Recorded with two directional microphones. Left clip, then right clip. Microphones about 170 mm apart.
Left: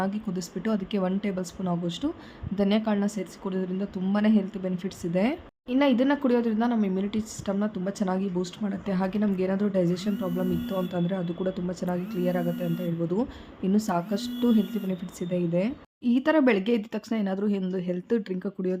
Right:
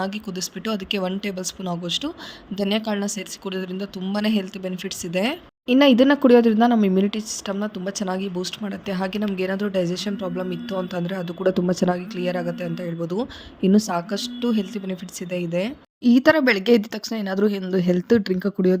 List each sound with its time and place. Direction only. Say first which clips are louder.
0.0 s speech: right 3 dB; 40° right (ahead or behind)